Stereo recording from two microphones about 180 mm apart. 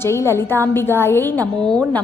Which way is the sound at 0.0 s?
15° left (ahead or behind).